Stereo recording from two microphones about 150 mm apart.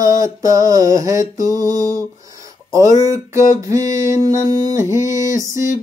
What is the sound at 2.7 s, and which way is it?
Music, 20° right (ahead or behind).